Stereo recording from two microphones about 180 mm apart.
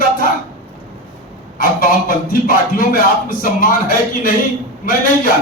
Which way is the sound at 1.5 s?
50° left (ahead or behind).